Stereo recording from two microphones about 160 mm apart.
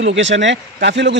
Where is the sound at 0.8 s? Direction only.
90° right.